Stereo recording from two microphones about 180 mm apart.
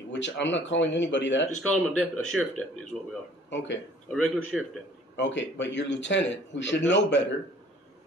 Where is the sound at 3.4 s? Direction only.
85° left.